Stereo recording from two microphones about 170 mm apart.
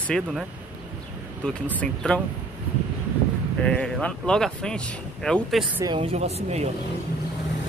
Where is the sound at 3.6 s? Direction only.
5° left (ahead or behind).